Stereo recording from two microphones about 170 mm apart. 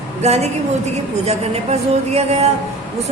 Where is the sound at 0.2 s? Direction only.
40° right (ahead or behind).